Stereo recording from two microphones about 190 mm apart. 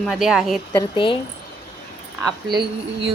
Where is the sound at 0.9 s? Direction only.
25° left (ahead or behind).